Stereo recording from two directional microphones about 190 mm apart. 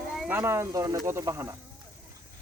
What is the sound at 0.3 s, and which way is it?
Speech, 10° right (ahead or behind).